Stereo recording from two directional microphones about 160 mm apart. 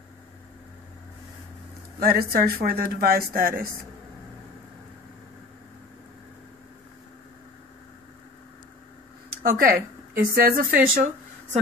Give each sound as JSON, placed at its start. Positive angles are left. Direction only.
{"t": 2.0, "sound": "a woman's voice", "side_deg": -70}
{"t": 9.4, "sound": "a woman's voice", "side_deg": -60}